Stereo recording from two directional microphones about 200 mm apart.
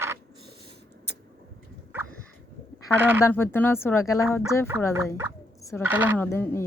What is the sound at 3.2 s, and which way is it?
Speech, 10° left (ahead or behind).